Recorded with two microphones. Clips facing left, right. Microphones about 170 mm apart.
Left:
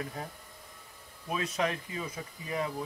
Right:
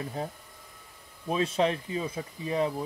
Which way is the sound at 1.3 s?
30° right (ahead or behind).